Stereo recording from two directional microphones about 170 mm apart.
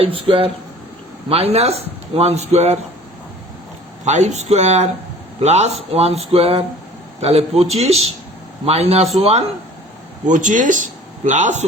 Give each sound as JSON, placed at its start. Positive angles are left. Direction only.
{"t": 0.0, "sound": "speech", "side_deg": -30}
{"t": 4.0, "sound": "a man's voice", "side_deg": -40}